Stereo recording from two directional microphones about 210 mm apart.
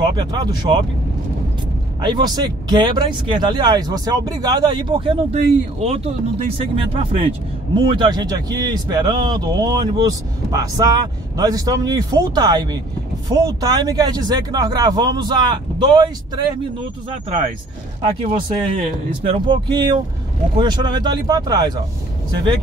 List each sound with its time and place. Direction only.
0.0 s speech: 20° right (ahead or behind)
2.0 s speech: 20° right (ahead or behind)
18.7 s speech: 25° right (ahead or behind)